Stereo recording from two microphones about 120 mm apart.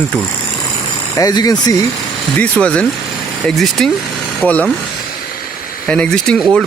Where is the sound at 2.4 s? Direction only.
10° left (ahead or behind).